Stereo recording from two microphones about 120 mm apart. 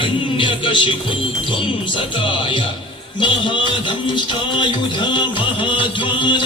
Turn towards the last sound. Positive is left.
turn(degrees=40)  # may be behind; listen again after turning